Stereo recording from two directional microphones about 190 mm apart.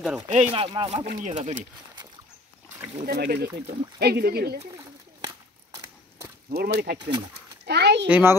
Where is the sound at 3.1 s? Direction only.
55° right (ahead or behind).